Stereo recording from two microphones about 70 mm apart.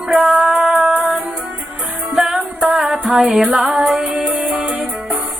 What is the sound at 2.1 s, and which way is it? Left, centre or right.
Music, centre.